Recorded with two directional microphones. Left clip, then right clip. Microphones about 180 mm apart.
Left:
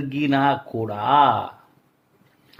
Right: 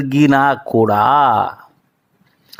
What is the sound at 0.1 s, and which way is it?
Speech, 45° right (ahead or behind).